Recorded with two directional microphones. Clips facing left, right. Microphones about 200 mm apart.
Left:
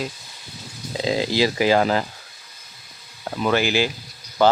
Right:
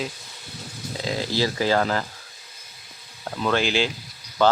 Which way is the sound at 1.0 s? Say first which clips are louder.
Left 4 dB; 15° left (ahead or behind).